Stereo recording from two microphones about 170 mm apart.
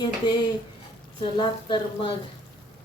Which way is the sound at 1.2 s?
30° left (ahead or behind).